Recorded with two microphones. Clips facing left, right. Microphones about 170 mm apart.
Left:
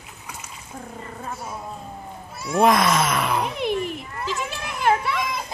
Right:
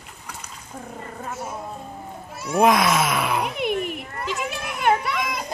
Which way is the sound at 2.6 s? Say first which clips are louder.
Even; centre (ahead or behind).